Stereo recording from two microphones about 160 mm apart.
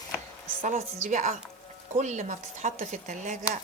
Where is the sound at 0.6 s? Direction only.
50° right (ahead or behind).